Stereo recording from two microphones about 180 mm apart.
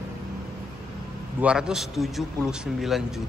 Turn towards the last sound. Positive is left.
turn(degrees=0)  # may be behind; listen again after turning